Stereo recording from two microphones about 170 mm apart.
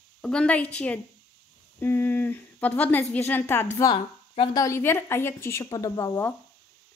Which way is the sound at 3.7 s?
25° left (ahead or behind).